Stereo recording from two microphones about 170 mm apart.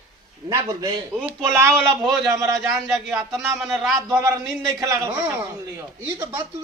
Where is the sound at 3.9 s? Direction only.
15° right (ahead or behind).